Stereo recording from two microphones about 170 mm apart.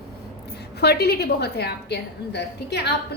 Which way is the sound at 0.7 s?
70° left (ahead or behind).